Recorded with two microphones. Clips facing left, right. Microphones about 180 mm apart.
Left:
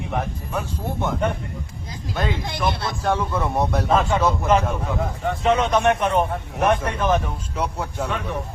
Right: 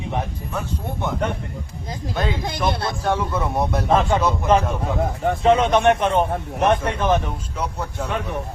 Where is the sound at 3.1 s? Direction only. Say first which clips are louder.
Even; centre (ahead or behind).